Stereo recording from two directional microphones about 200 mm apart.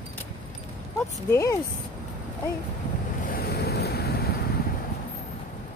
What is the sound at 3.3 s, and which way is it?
Waves, 50° left (ahead or behind).